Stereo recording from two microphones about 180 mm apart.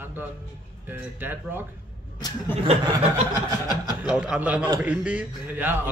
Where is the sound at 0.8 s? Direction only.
10° right (ahead or behind).